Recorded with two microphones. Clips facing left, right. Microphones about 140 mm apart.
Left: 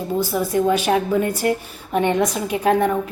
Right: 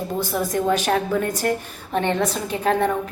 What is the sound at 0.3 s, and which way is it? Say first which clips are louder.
A woman's voice: left 2 dB; centre (ahead or behind).